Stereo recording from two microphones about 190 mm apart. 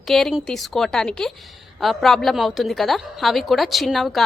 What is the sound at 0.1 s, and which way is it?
A woman's voice, centre (ahead or behind).